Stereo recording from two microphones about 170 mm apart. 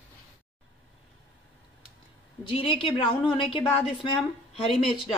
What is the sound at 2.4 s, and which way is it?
A woman's voice, 30° left (ahead or behind).